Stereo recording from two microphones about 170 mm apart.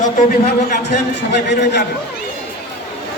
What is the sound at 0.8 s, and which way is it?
Speech, 85° left.